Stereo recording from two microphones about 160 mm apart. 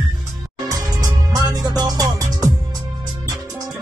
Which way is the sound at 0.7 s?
20° right (ahead or behind).